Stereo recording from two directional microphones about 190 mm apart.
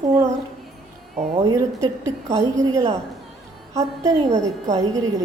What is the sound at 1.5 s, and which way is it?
A woman's voice, 15° right (ahead or behind).